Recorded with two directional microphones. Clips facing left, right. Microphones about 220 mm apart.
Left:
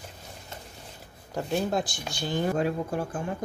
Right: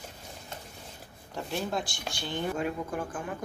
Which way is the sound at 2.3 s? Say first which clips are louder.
Left 5 dB; 40° left (ahead or behind).